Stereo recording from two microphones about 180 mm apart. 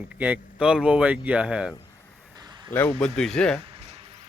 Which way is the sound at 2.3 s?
20° right (ahead or behind).